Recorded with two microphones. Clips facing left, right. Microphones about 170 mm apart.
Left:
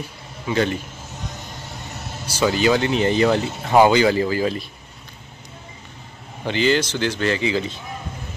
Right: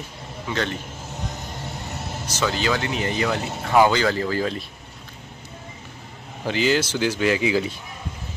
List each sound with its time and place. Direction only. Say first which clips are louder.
2.2 s speech: left 6 dB; 10° left (ahead or behind)
6.4 s a man's voice: left 2 dB; 5° right (ahead or behind)